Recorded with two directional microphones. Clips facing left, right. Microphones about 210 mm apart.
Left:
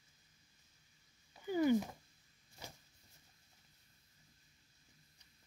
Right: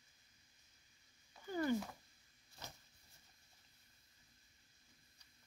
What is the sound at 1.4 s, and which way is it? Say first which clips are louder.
Cat: left 6 dB; 15° left (ahead or behind).